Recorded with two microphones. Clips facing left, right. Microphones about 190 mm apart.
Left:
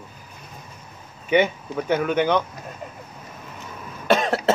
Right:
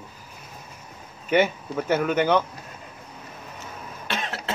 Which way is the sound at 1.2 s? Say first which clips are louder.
Left 2 dB; 5° right (ahead or behind).